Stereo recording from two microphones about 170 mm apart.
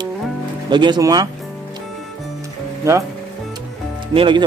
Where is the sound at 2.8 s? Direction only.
15° right (ahead or behind).